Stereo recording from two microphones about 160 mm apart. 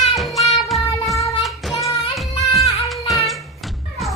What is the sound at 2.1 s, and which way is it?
Music, centre (ahead or behind).